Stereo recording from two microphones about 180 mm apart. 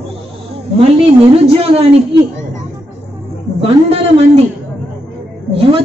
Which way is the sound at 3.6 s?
30° right (ahead or behind).